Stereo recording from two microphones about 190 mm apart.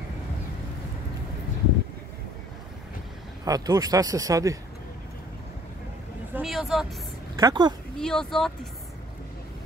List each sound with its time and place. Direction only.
3.4 s speech: 20° right (ahead or behind)
6.3 s vehicle: centre (ahead or behind)
7.3 s speech: 20° right (ahead or behind)
8.0 s speech: 5° left (ahead or behind)